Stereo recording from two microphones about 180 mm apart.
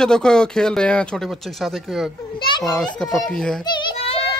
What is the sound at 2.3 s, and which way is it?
Speech, 25° left (ahead or behind).